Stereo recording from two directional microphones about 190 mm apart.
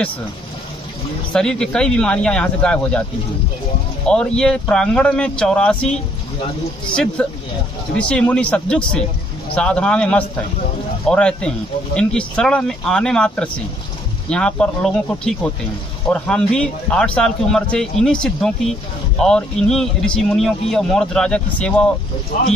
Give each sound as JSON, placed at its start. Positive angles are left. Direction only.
{"t": 1.3, "sound": "speech", "side_deg": 5}
{"t": 4.1, "sound": "speech", "side_deg": 5}
{"t": 7.2, "sound": "speech", "side_deg": 5}
{"t": 22.3, "sound": "speech", "side_deg": 40}